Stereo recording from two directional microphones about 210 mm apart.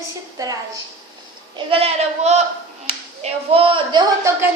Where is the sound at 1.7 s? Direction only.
30° right (ahead or behind).